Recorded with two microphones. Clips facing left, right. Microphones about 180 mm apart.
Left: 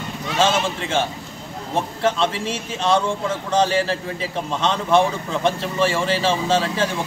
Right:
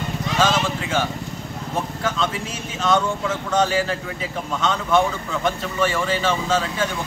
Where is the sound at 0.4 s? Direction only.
25° left (ahead or behind).